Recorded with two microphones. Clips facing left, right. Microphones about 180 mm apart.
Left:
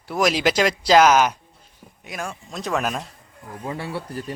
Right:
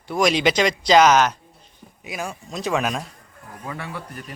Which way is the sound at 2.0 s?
5° right (ahead or behind).